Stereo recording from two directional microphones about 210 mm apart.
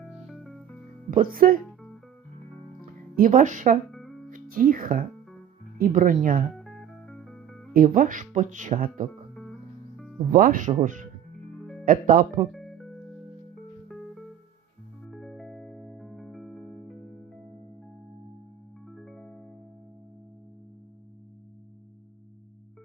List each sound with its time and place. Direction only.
0.1 s music: centre (ahead or behind)
1.1 s speech: 40° right (ahead or behind)
2.8 s speech: 40° right (ahead or behind)
3.9 s music: centre (ahead or behind)
4.3 s speech: 40° right (ahead or behind)
6.6 s music: centre (ahead or behind)
7.7 s speech: 40° right (ahead or behind)
10.3 s speech: 40° right (ahead or behind)
11.6 s music: centre (ahead or behind)
11.9 s speech: 40° right (ahead or behind)
12.5 s music: centre (ahead or behind)
15.0 s music: centre (ahead or behind)
18.9 s music: centre (ahead or behind)